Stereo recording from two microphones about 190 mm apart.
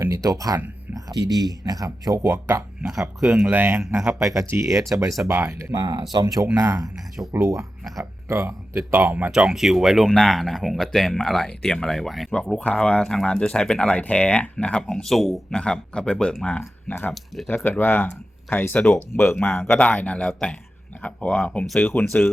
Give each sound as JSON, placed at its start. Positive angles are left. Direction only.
{"t": 0.0, "sound": "speech", "side_deg": -15}
{"t": 4.4, "sound": "speech", "side_deg": -15}